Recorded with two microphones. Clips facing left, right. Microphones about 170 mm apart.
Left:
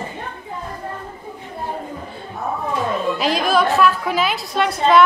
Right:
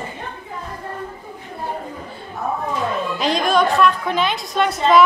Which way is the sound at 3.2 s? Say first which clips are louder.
Right 2 dB; 5° left (ahead or behind).